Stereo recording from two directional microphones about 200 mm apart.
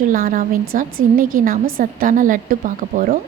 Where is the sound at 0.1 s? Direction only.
45° right (ahead or behind).